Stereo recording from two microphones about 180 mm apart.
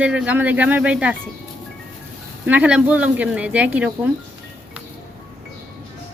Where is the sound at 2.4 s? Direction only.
5° right (ahead or behind).